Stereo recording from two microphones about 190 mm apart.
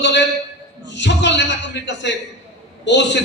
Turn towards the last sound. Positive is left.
turn(degrees=65)  # may be behind; listen again after turning